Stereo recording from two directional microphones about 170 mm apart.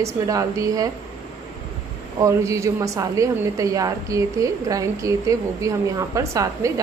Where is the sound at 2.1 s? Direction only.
20° right (ahead or behind).